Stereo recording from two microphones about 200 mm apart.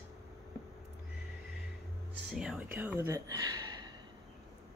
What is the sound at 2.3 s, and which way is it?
Speech, 5° right (ahead or behind).